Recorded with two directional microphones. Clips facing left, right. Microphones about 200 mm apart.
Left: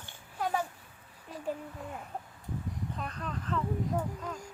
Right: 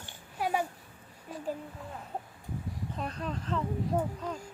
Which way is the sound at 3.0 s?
30° right (ahead or behind).